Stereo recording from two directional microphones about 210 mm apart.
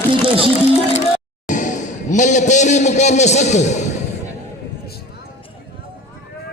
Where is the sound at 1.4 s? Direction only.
35° left (ahead or behind).